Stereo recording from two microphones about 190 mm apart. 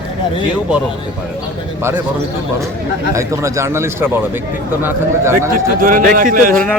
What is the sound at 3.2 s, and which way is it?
Speech, 15° right (ahead or behind).